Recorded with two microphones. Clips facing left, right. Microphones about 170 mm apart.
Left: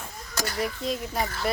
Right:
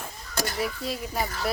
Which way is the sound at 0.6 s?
5° right (ahead or behind).